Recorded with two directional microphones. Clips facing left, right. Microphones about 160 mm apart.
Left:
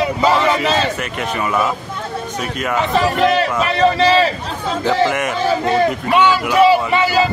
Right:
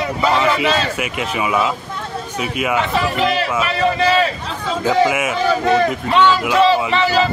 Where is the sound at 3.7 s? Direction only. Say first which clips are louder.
Left 4 dB; 35° left (ahead or behind).